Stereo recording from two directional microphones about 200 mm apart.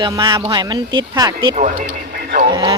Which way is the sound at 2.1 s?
45° right (ahead or behind).